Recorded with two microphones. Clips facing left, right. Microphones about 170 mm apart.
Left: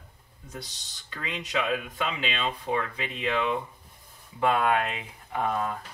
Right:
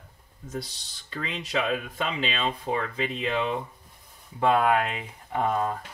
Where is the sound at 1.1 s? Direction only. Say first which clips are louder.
Right 2 dB; 35° right (ahead or behind).